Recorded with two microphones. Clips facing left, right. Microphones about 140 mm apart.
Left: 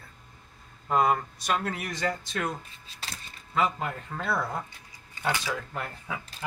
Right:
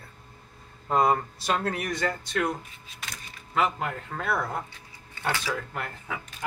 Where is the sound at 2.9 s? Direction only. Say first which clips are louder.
Left 1 dB; 30° left (ahead or behind).